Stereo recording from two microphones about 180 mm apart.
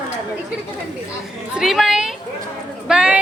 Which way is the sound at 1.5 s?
Centre (ahead or behind).